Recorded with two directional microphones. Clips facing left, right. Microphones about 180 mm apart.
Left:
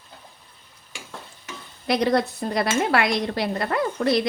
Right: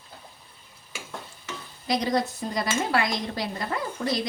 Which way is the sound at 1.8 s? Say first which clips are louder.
Left 4 dB; 60° left (ahead or behind).